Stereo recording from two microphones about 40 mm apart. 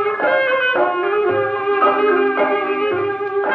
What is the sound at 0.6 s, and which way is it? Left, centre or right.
Music, centre.